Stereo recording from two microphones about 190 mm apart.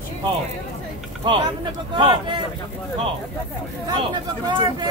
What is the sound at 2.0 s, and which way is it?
Speech, 25° right (ahead or behind).